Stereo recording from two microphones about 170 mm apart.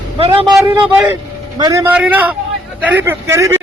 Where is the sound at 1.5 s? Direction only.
25° right (ahead or behind).